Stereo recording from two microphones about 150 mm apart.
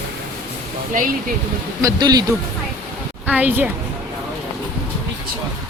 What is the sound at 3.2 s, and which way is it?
Speech, 10° right (ahead or behind).